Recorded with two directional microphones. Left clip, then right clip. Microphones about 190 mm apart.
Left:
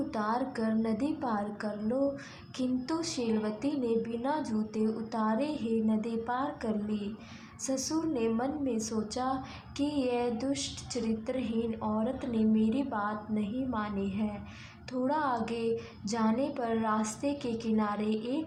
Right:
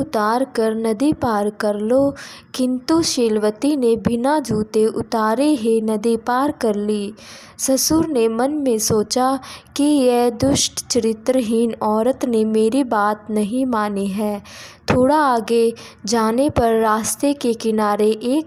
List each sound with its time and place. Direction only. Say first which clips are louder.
0.1 s speech: right 17 dB; 45° right (ahead or behind)